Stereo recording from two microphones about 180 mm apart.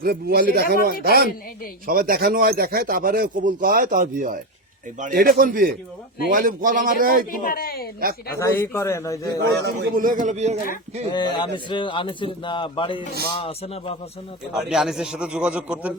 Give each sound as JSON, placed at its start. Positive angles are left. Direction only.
{"t": 0.0, "sound": "speech", "side_deg": -55}
{"t": 7.3, "sound": "speech", "side_deg": 55}
{"t": 8.4, "sound": "a man's voice", "side_deg": 15}
{"t": 9.4, "sound": "speech", "side_deg": -65}
{"t": 11.1, "sound": "speech", "side_deg": 25}
{"t": 14.7, "sound": "a man's voice", "side_deg": 0}